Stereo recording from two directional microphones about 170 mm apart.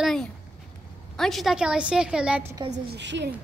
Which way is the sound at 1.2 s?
Centre (ahead or behind).